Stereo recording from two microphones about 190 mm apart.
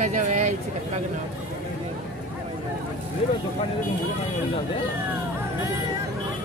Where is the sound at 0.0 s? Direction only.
40° right (ahead or behind).